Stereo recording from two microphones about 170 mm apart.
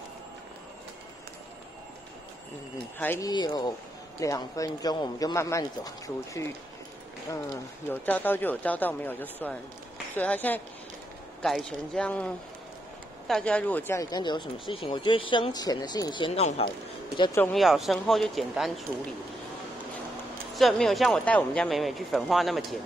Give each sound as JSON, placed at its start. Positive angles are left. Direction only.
{"t": 3.0, "sound": "speech", "side_deg": 10}
{"t": 3.3, "sound": "speech", "side_deg": 25}
{"t": 7.9, "sound": "speech", "side_deg": 10}
{"t": 17.5, "sound": "speech", "side_deg": 0}
{"t": 20.5, "sound": "speech", "side_deg": 0}